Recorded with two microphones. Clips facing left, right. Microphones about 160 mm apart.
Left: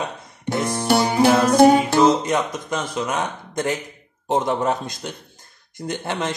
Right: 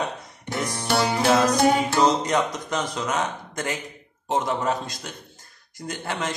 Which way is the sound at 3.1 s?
20° left (ahead or behind).